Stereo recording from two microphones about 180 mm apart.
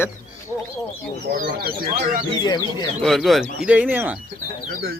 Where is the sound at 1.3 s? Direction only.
55° right (ahead or behind).